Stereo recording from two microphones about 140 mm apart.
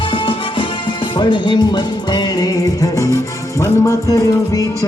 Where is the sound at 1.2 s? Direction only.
35° left (ahead or behind).